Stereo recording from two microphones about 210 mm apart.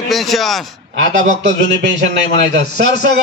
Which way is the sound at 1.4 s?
55° right (ahead or behind).